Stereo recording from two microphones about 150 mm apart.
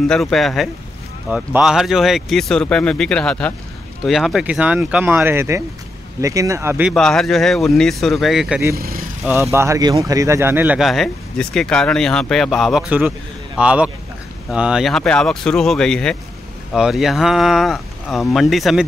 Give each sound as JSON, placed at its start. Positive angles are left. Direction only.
{"t": 0.1, "sound": "speech", "side_deg": 0}
{"t": 6.9, "sound": "speech", "side_deg": 0}
{"t": 8.7, "sound": "speech", "side_deg": -80}
{"t": 9.2, "sound": "speech", "side_deg": -15}
{"t": 10.8, "sound": "speech", "side_deg": 0}